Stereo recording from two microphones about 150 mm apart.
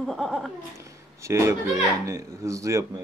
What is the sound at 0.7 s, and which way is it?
Speech, 20° right (ahead or behind).